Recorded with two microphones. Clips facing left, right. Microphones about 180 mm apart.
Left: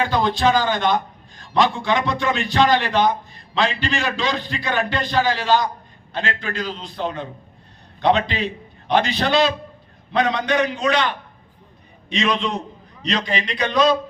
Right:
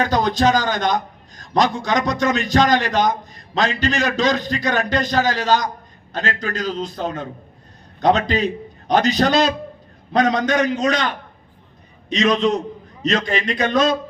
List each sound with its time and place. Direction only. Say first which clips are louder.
0.0 s a man's voice: right 2 dB; 45° right (ahead or behind)